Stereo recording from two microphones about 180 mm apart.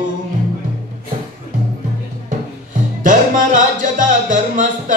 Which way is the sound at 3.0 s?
45° right (ahead or behind).